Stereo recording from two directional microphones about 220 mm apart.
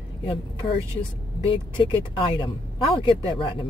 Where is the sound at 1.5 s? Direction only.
20° left (ahead or behind).